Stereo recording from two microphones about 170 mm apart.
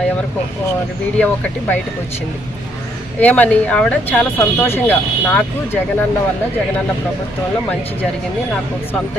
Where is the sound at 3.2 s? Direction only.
10° left (ahead or behind).